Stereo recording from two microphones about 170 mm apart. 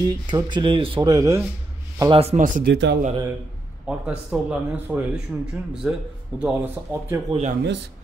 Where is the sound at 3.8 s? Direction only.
5° right (ahead or behind).